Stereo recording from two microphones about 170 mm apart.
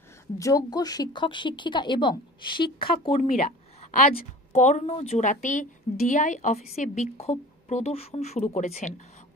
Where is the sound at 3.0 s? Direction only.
45° left (ahead or behind).